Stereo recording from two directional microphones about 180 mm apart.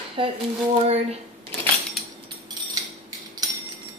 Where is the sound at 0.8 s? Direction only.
35° right (ahead or behind).